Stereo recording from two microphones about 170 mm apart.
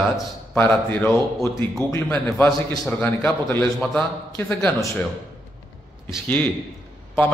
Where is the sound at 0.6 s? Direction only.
10° left (ahead or behind).